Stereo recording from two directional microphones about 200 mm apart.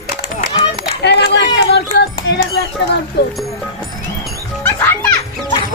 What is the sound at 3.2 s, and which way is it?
Speech, 55° left (ahead or behind).